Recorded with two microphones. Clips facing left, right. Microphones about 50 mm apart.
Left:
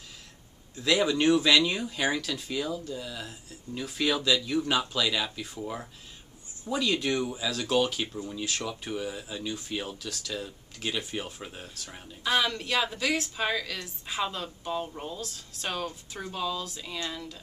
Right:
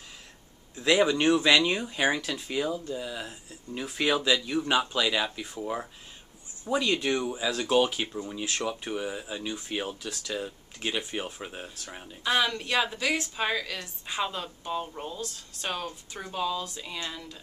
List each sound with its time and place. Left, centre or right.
0.7 s speech: centre
11.7 s a woman's voice: centre